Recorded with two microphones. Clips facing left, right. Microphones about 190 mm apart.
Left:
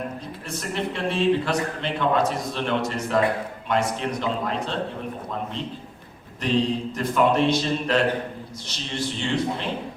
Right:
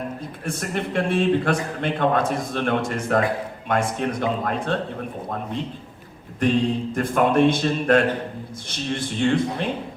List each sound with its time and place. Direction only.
0.4 s a man's voice: 55° right (ahead or behind)
6.4 s a man's voice: 50° right (ahead or behind)